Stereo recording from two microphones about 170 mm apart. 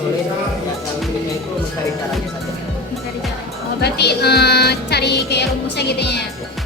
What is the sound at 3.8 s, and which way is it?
Speech, 75° left (ahead or behind).